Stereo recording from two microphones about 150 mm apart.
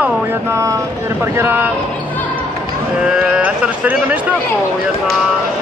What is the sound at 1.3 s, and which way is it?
Speech, 15° right (ahead or behind).